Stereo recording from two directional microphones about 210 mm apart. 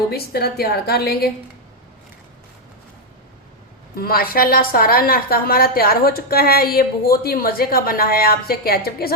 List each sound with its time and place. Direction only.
0.1 s a woman's voice: 50° left (ahead or behind)
3.9 s a woman's voice: 45° left (ahead or behind)